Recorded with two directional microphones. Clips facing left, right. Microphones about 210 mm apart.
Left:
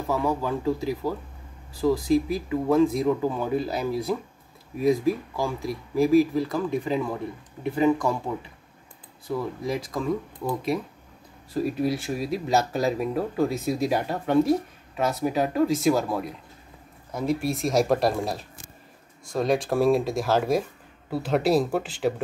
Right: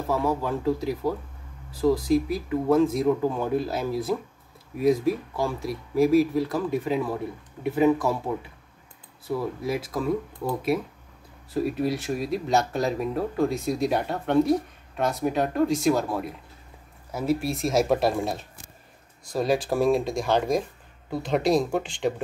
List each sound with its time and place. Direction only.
0.0 s speech: centre (ahead or behind)